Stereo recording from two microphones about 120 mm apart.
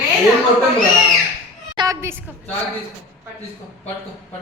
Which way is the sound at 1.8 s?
40° right (ahead or behind).